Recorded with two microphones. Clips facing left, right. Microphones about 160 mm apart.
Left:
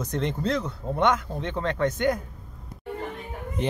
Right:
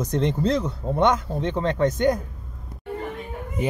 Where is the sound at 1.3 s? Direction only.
35° right (ahead or behind).